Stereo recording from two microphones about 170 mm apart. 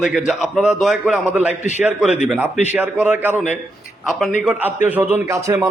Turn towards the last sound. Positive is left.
turn(degrees=-15)  # may be behind; listen again after turning